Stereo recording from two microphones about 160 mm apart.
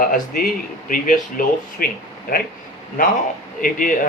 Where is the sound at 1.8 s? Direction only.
65° left (ahead or behind).